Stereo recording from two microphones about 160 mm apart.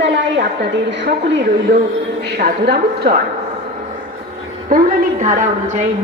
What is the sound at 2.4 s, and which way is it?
Speech, 80° right.